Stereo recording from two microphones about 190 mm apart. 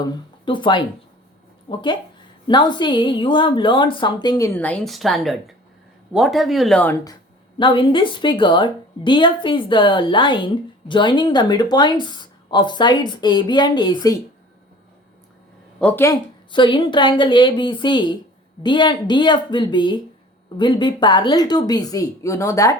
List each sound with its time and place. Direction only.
0.0 s a woman's voice: 25° left (ahead or behind); by 6.9 s 5° left (ahead or behind)
7.6 s a woman's voice: 25° left (ahead or behind)
15.8 s speech: 10° left (ahead or behind)
16.5 s a woman's voice: 25° left (ahead or behind)